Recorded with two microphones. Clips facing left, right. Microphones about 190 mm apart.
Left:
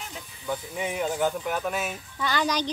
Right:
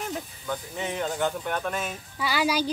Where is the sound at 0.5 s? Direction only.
10° left (ahead or behind).